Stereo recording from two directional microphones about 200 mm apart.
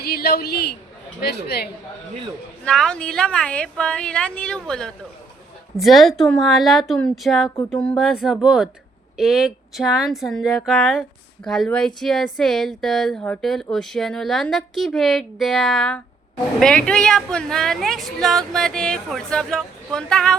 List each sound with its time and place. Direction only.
0.0 s a woman's voice: 50° left (ahead or behind)
2.6 s speech: 5° left (ahead or behind)